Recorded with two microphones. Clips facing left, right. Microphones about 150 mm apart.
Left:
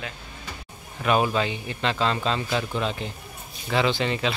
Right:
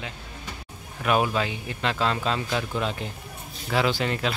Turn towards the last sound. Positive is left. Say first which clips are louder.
# left 1 dB
turn(degrees=-5)  # may be behind; listen again after turning